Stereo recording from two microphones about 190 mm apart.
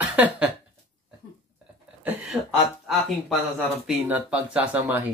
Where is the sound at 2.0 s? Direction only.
5° right (ahead or behind).